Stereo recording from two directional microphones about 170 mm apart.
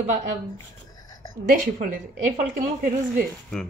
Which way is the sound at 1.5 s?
55° right (ahead or behind).